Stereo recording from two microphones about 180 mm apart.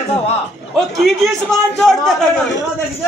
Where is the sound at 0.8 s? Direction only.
Centre (ahead or behind).